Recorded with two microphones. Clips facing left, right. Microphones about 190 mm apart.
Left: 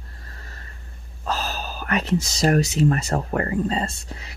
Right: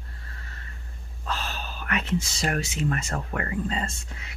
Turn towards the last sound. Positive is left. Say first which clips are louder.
# left 5 dB
turn(degrees=35)  # may be behind; listen again after turning